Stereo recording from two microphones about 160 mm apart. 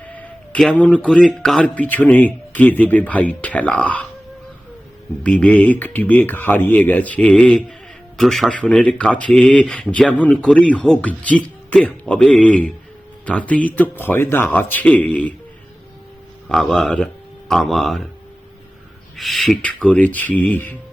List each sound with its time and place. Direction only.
0.1 s speech: 10° left (ahead or behind)
5.2 s speech: 10° left (ahead or behind)
16.5 s speech: centre (ahead or behind)
19.1 s speech: centre (ahead or behind)